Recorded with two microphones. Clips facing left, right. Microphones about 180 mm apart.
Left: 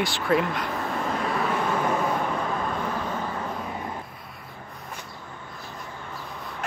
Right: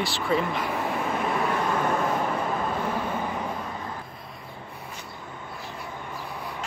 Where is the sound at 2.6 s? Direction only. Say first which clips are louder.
Right 1 dB; 5° right (ahead or behind).